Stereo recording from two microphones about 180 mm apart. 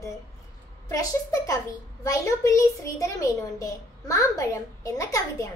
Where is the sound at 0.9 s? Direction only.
20° left (ahead or behind).